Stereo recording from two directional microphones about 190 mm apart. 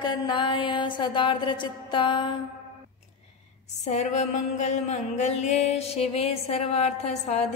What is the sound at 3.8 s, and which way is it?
Mantra, 40° left (ahead or behind).